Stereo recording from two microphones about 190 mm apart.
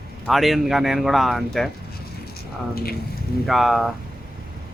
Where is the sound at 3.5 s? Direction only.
Centre (ahead or behind).